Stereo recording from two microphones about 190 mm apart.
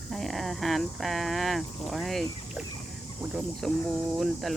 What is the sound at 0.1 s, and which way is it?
Speech, centre (ahead or behind).